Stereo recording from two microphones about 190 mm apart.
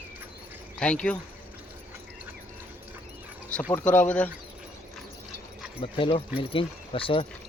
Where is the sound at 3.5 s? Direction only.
5° left (ahead or behind).